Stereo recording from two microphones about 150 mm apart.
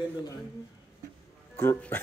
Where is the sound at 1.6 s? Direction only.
15° left (ahead or behind).